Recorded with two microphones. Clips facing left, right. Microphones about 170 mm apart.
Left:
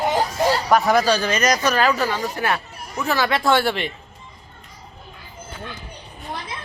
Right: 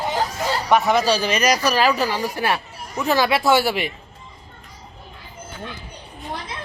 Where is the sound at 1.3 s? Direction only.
10° right (ahead or behind).